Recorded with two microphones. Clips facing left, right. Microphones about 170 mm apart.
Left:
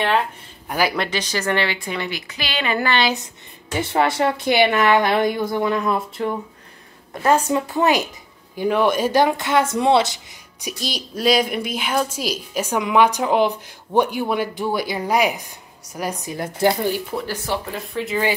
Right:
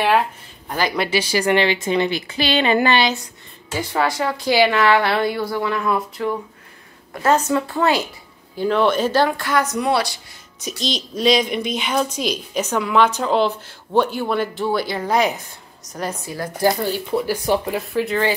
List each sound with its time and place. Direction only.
0.7 s speech: 10° left (ahead or behind)
0.9 s a woman's voice: 5° right (ahead or behind); by 3.0 s 25° right (ahead or behind)
3.7 s speech: 25° left (ahead or behind)
7.2 s a woman's voice: 15° left (ahead or behind)
10.8 s a woman's voice: 10° left (ahead or behind)
17.1 s speech: centre (ahead or behind)